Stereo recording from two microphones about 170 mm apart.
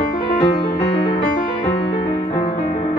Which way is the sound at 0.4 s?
35° left (ahead or behind).